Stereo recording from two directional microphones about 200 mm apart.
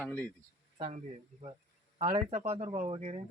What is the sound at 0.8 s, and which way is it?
Speech, 35° right (ahead or behind).